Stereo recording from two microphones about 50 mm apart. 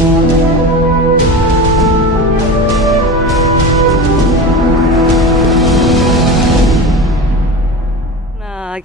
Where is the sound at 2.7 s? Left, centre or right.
Centre.